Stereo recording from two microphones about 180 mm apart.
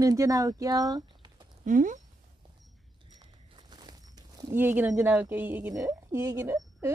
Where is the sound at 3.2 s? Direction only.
25° right (ahead or behind).